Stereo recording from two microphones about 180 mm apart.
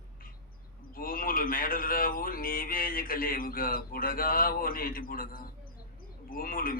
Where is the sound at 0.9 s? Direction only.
55° left (ahead or behind).